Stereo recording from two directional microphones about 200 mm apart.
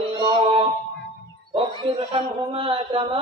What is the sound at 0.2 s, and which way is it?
Music, 25° right (ahead or behind).